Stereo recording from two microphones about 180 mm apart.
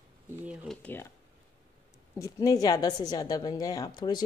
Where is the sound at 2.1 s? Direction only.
20° left (ahead or behind).